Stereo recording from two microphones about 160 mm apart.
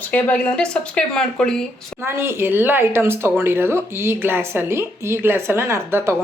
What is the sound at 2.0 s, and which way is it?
Speech, 15° right (ahead or behind).